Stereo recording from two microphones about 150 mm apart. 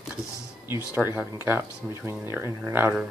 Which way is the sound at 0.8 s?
15° right (ahead or behind).